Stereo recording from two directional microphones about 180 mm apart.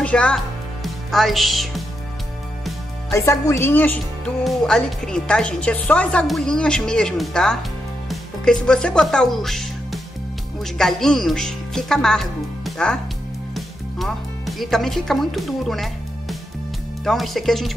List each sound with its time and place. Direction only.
0.0 s speech: 5° left (ahead or behind)
3.1 s a woman's voice: 15° left (ahead or behind)